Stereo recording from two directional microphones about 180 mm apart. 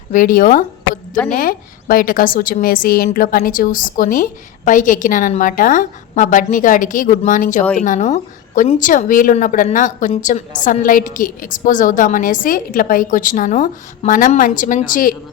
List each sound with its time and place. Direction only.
0.1 s a woman's voice: 50° left (ahead or behind)